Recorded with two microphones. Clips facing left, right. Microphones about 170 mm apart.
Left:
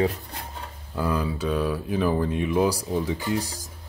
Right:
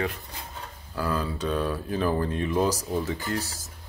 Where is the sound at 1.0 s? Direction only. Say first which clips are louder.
Left 2 dB; 15° left (ahead or behind).